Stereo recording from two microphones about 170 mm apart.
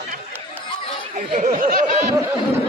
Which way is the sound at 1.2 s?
45° right (ahead or behind).